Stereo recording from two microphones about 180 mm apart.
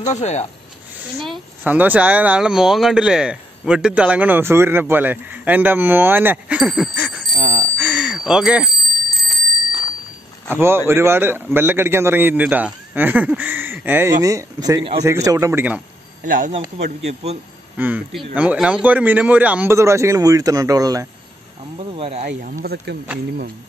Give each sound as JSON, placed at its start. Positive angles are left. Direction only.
{"t": 0.0, "sound": "speech", "side_deg": 40}
{"t": 1.2, "sound": "a woman's voice", "side_deg": -5}
{"t": 7.3, "sound": "speech", "side_deg": 50}
{"t": 7.7, "sound": "bicycle bell", "side_deg": -5}
{"t": 10.5, "sound": "a woman's voice", "side_deg": -15}
{"t": 15.0, "sound": "a woman's voice", "side_deg": -15}
{"t": 16.3, "sound": "speech", "side_deg": -45}
{"t": 16.7, "sound": "a man's voice", "side_deg": -35}
{"t": 17.7, "sound": "a woman's voice", "side_deg": -10}
{"t": 21.7, "sound": "a man's voice", "side_deg": -35}
{"t": 22.2, "sound": "speech", "side_deg": -50}